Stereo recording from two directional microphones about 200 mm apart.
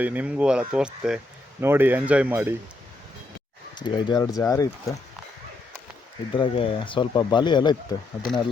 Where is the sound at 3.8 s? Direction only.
20° left (ahead or behind).